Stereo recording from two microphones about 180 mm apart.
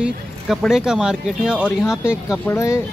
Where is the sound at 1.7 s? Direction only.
15° left (ahead or behind).